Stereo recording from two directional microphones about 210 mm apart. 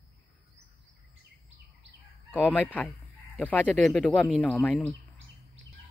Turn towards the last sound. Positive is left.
turn(degrees=0)  # may be behind; listen again after turning